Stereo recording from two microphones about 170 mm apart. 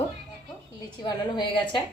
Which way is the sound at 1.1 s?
25° left (ahead or behind).